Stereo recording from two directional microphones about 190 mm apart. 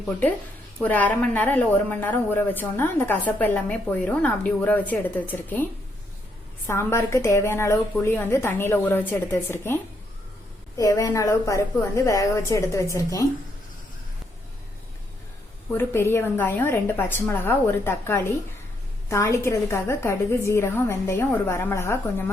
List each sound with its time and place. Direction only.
0.0 s a woman's voice: 10° left (ahead or behind)
6.7 s a woman's voice: 15° left (ahead or behind)
15.7 s a woman's voice: 10° left (ahead or behind)